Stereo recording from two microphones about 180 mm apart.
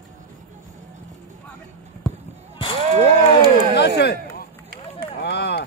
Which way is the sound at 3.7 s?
70° left (ahead or behind).